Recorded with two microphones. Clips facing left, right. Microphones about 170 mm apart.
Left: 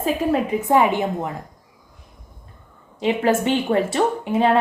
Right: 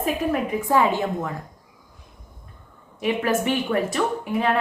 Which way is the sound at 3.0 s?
25° left (ahead or behind).